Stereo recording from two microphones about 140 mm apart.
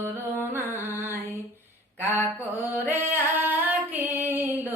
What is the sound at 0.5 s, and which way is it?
Music, 15° right (ahead or behind).